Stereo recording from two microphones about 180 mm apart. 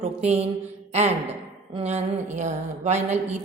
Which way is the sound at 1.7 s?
35° right (ahead or behind).